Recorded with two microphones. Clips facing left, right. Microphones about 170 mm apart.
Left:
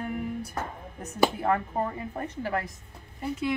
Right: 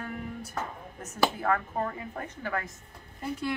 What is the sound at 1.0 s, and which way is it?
A woman's voice, 25° left (ahead or behind).